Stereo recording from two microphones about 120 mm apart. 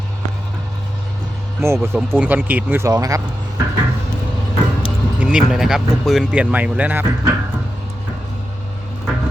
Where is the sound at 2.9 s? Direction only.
30° right (ahead or behind).